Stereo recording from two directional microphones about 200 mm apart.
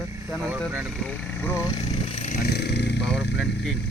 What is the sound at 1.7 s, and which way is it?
Speech, 30° left (ahead or behind).